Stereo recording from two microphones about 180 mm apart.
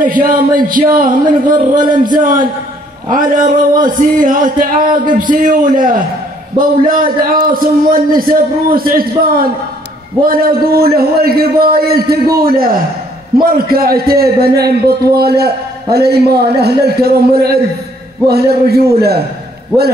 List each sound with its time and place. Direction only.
0.0 s a man's voice: 50° right (ahead or behind)